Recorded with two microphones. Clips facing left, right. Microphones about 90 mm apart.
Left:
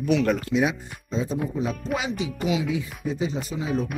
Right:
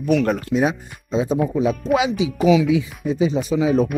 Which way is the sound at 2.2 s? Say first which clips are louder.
Right 10 dB; 90° right.